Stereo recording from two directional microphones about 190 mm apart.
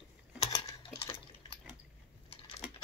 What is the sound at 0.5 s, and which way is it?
Typing, 25° left (ahead or behind).